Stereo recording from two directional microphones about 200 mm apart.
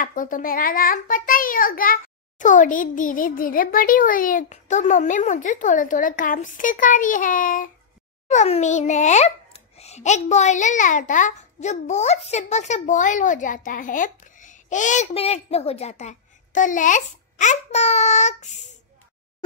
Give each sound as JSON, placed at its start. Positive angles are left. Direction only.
{"t": 0.0, "sound": "a child's voice", "side_deg": 45}